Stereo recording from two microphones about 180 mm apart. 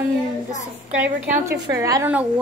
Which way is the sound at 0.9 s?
10° right (ahead or behind).